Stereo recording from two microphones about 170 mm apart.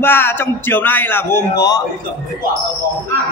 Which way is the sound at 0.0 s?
10° left (ahead or behind).